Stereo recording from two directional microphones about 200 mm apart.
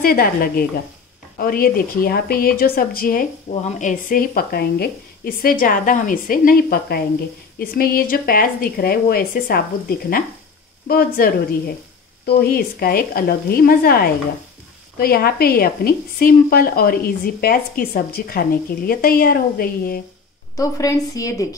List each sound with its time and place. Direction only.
0.0 s a woman's voice: 45° left (ahead or behind)
20.5 s a woman's voice: 15° left (ahead or behind)